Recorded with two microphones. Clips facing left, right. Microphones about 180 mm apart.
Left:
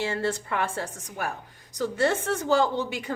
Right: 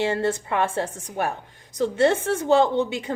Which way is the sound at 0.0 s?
20° right (ahead or behind).